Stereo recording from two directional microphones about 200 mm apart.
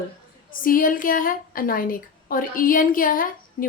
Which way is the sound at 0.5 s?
45° left (ahead or behind).